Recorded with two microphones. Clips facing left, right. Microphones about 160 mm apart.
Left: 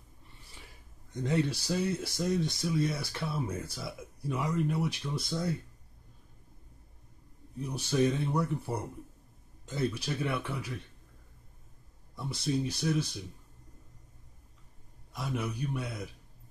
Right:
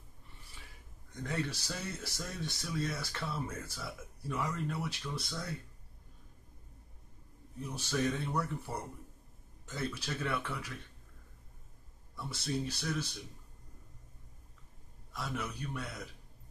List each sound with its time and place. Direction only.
1.2 s speech: 20° left (ahead or behind)
7.7 s speech: 20° left (ahead or behind)
9.9 s speech: 15° left (ahead or behind)
12.2 s speech: 15° left (ahead or behind)
15.1 s speech: 15° left (ahead or behind)